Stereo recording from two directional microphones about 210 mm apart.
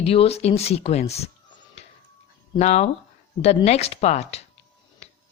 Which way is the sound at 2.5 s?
30° left (ahead or behind).